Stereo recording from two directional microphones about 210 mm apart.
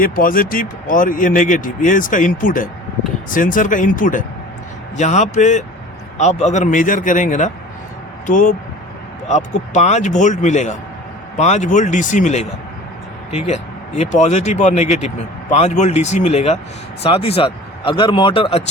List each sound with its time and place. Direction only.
0.0 s speech: 40° left (ahead or behind); by 18.6 s 25° left (ahead or behind)